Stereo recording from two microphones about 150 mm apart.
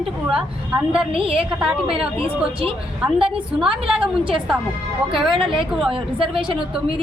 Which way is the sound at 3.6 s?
35° right (ahead or behind).